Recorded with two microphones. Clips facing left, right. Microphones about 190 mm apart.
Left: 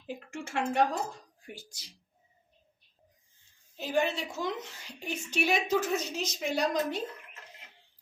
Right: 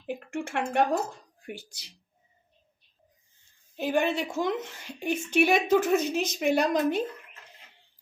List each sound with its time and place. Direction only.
0.1 s a woman's voice: 60° right (ahead or behind)
3.8 s a woman's voice: 55° right (ahead or behind)